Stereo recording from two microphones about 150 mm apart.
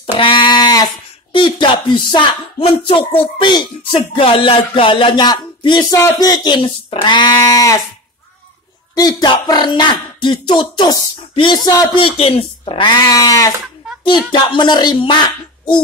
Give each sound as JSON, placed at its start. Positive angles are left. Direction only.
{"t": 0.2, "sound": "a sound", "side_deg": 30}
{"t": 1.3, "sound": "speech", "side_deg": 35}
{"t": 8.9, "sound": "speech", "side_deg": 25}
{"t": 12.9, "sound": "cat", "side_deg": 25}
{"t": 14.3, "sound": "speech", "side_deg": 30}